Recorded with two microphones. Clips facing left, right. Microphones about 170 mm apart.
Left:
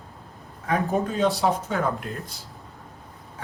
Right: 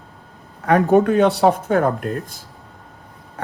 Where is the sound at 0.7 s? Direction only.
70° right (ahead or behind); by 2.4 s 50° right (ahead or behind).